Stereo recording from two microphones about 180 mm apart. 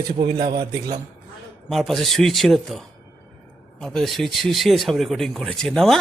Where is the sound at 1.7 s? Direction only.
Centre (ahead or behind).